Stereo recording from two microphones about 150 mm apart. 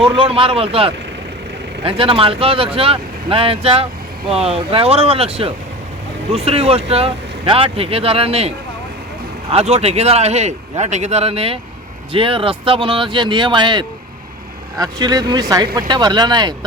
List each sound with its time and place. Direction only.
0.0 s speech: 40° right (ahead or behind)